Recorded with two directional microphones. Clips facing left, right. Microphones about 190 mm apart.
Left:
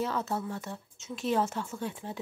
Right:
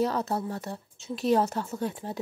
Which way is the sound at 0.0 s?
40° right (ahead or behind).